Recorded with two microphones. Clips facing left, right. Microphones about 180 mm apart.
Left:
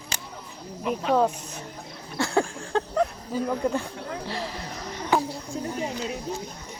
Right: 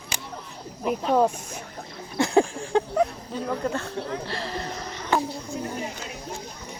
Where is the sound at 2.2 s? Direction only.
15° right (ahead or behind).